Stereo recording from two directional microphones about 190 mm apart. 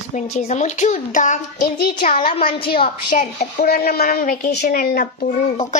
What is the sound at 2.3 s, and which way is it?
Speech, 30° left (ahead or behind).